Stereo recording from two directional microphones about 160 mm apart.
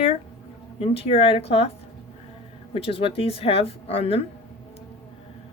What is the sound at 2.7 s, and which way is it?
Speech, 35° left (ahead or behind).